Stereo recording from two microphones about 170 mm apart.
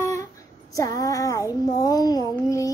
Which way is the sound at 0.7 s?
20° left (ahead or behind).